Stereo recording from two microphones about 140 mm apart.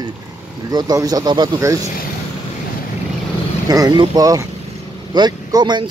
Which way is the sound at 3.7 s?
30° right (ahead or behind).